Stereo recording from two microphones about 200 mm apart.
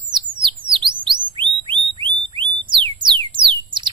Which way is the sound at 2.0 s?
25° right (ahead or behind).